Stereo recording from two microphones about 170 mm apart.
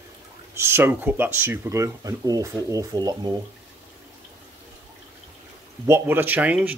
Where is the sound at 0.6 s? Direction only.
15° right (ahead or behind).